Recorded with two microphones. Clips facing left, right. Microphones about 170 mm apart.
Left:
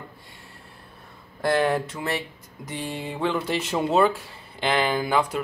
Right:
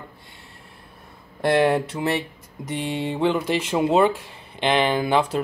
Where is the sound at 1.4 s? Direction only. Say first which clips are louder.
Right 3 dB; 20° right (ahead or behind).